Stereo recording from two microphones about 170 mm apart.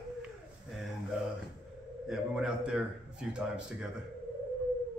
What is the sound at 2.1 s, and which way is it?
Speech, 5° right (ahead or behind).